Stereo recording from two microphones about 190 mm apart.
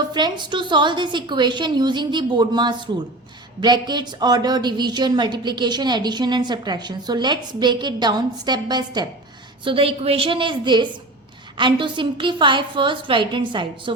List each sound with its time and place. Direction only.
0.1 s a woman's voice: 25° right (ahead or behind)